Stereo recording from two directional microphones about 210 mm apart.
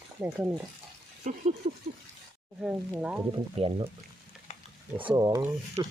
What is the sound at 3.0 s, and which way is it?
Speech, 5° right (ahead or behind).